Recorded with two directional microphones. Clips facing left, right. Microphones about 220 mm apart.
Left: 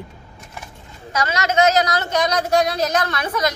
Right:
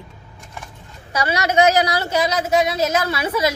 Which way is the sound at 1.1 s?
15° right (ahead or behind).